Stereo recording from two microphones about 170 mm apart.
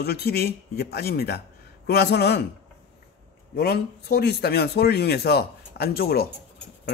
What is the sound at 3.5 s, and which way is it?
Speech, 65° left (ahead or behind).